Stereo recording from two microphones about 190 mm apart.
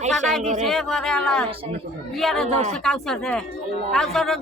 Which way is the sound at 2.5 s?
35° right (ahead or behind).